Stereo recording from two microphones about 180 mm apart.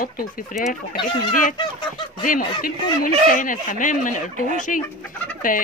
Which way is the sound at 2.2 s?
50° left (ahead or behind).